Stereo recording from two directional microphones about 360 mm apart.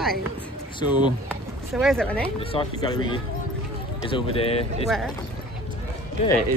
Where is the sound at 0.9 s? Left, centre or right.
Centre.